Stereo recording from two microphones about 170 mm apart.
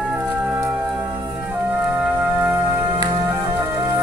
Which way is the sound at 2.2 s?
15° right (ahead or behind).